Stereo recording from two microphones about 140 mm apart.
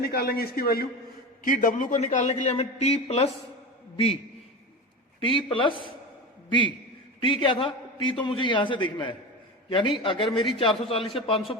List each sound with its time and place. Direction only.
0.0 s a man's voice: 90° left
1.5 s a man's voice: 75° left (ahead or behind); by 4.2 s 45° left (ahead or behind)
5.2 s a man's voice: 40° left (ahead or behind)